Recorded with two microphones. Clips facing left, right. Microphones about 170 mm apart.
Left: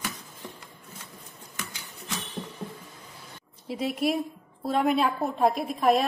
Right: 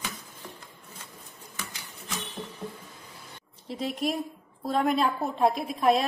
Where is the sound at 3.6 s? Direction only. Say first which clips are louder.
Left 3 dB; 5° left (ahead or behind).